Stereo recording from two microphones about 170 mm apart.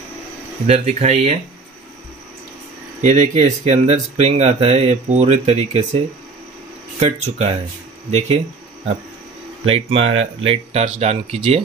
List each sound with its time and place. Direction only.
0.7 s speech: 40° right (ahead or behind)
3.0 s speech: 40° right (ahead or behind)
7.0 s speech: 40° right (ahead or behind)
9.7 s speech: 35° right (ahead or behind)